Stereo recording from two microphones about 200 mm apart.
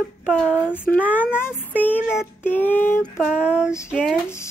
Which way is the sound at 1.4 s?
10° left (ahead or behind).